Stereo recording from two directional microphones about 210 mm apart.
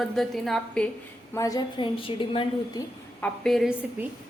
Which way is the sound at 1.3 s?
15° left (ahead or behind).